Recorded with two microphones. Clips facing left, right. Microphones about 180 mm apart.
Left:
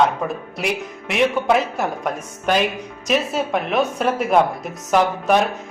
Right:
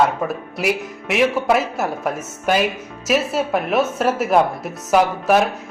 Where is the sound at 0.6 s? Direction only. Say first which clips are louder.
Right 3 dB; centre (ahead or behind).